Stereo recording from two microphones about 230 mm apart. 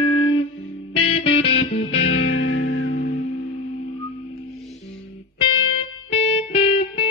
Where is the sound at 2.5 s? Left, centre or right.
Left.